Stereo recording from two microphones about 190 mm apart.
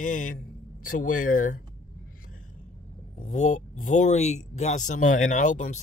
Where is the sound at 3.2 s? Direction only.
40° left (ahead or behind).